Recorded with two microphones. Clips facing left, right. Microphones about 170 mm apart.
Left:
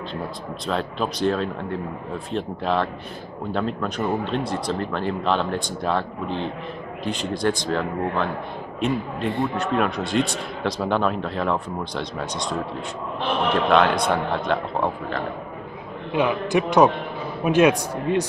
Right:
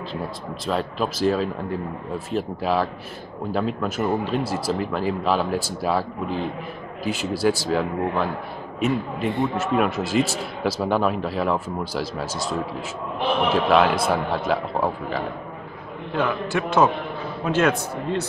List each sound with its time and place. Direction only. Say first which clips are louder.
0.7 s a man's voice: right 1 dB; centre (ahead or behind)
16.1 s a man's voice: left 3 dB; 15° left (ahead or behind)